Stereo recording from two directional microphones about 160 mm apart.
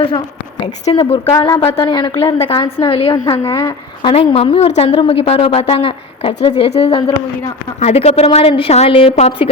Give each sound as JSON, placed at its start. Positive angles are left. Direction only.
{"t": 0.6, "sound": "a woman's voice", "side_deg": 35}
{"t": 1.3, "sound": "a woman's voice", "side_deg": 25}
{"t": 3.4, "sound": "a woman's voice", "side_deg": 20}
{"t": 4.1, "sound": "a woman's voice", "side_deg": 40}